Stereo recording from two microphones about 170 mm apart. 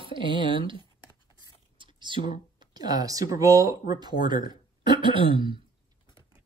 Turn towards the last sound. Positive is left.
turn(degrees=-30)  # may be behind; listen again after turning